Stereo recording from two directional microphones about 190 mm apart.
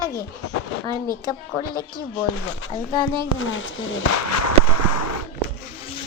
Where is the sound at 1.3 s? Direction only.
20° left (ahead or behind).